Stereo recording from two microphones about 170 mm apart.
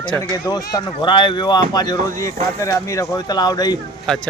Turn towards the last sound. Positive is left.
turn(degrees=5)  # may be behind; listen again after turning